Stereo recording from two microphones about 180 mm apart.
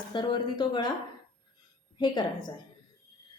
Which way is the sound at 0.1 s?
25° left (ahead or behind).